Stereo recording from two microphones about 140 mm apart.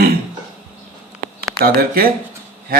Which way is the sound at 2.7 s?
90° right.